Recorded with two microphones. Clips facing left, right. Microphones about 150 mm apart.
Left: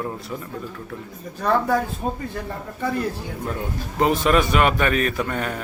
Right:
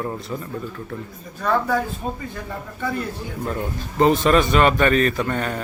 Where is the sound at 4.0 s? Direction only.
5° left (ahead or behind).